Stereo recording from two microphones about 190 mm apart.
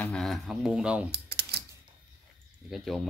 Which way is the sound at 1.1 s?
60° right (ahead or behind).